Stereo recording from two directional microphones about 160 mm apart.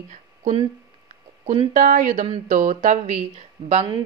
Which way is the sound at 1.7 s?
55° right (ahead or behind).